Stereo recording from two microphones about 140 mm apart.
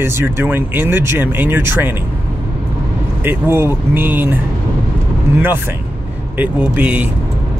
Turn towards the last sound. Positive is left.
turn(degrees=-10)  # may be behind; listen again after turning